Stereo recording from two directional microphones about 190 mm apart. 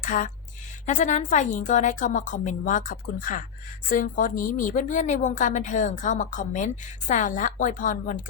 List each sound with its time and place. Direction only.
0.1 s a woman's voice: 45° left (ahead or behind)